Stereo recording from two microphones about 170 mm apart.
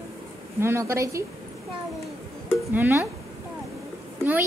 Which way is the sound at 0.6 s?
15° right (ahead or behind).